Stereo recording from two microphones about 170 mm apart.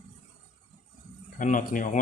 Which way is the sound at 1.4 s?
50° left (ahead or behind).